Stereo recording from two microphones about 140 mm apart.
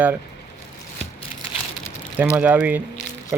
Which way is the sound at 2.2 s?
10° right (ahead or behind).